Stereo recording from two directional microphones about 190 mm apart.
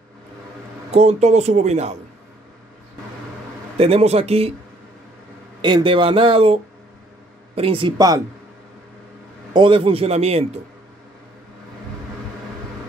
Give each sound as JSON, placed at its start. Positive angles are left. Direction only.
{"t": 0.9, "sound": "a man's voice", "side_deg": -35}
{"t": 3.7, "sound": "a man's voice", "side_deg": -30}
{"t": 5.6, "sound": "speech", "side_deg": -25}
{"t": 9.5, "sound": "a man's voice", "side_deg": -25}